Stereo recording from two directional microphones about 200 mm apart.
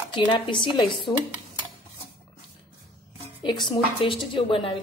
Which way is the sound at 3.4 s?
25° left (ahead or behind).